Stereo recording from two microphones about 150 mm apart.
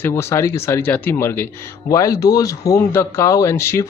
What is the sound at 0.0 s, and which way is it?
Speech, 20° left (ahead or behind).